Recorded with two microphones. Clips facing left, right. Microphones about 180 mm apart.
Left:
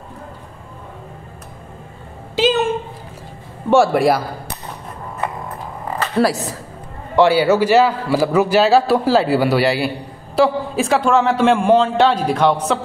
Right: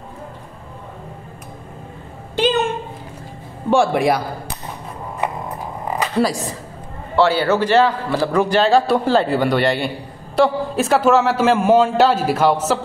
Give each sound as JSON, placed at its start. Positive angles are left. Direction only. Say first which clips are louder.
{"t": 2.4, "sound": "a sound", "louder": "left 1 dB", "side_deg": 0}
{"t": 3.7, "sound": "a man's voice", "louder": "left 2 dB", "side_deg": 0}
{"t": 6.1, "sound": "a man's voice", "louder": "left 4 dB", "side_deg": 0}